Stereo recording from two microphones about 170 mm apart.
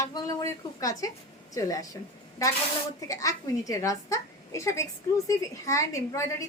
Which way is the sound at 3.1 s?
20° left (ahead or behind).